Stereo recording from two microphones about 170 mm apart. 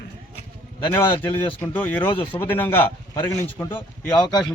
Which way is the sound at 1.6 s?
10° left (ahead or behind).